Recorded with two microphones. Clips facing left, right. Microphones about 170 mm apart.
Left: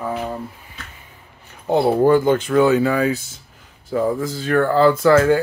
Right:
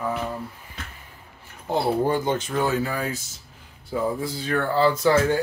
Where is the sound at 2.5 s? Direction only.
75° left (ahead or behind).